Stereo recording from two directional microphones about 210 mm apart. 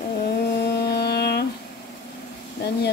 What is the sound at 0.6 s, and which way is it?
Music, 50° left (ahead or behind).